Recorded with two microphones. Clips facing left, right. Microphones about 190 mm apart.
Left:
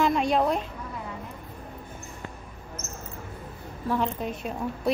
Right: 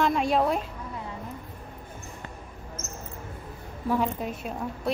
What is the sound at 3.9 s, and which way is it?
A woman's voice, 5° right (ahead or behind).